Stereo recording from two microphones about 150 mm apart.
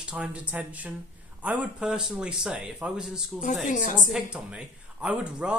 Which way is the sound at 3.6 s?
60° left (ahead or behind).